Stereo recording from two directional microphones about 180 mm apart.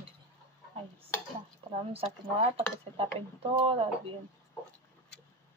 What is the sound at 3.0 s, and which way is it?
Speech, 30° right (ahead or behind).